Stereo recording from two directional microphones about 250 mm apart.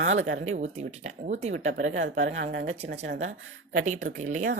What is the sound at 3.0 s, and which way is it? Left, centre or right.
Speech, right.